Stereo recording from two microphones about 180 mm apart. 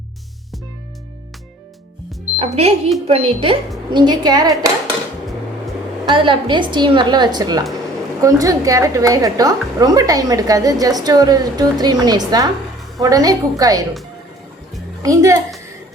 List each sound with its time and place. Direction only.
2.4 s a woman's voice: 35° right (ahead or behind)
6.1 s a woman's voice: 25° right (ahead or behind)
15.0 s a woman's voice: 20° right (ahead or behind)